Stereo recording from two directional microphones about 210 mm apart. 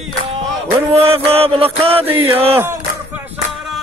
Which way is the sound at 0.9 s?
30° right (ahead or behind).